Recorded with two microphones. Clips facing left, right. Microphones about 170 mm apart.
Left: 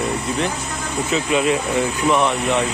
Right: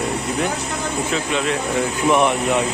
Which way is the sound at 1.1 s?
5° left (ahead or behind).